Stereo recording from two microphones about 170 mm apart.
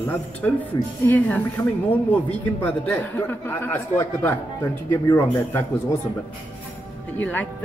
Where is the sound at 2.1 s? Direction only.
10° left (ahead or behind).